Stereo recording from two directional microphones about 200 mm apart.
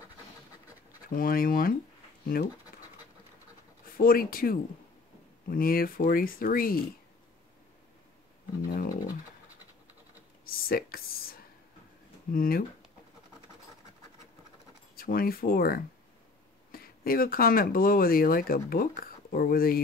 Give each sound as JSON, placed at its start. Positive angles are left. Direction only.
{"t": 1.0, "sound": "speech", "side_deg": 45}
{"t": 3.9, "sound": "speech", "side_deg": 45}
{"t": 8.6, "sound": "a sound", "side_deg": 45}
{"t": 10.4, "sound": "a sound", "side_deg": 50}
{"t": 12.3, "sound": "speech", "side_deg": 45}
{"t": 15.0, "sound": "speech", "side_deg": 45}